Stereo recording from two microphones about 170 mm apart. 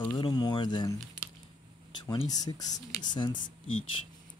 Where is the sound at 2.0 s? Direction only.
25° left (ahead or behind).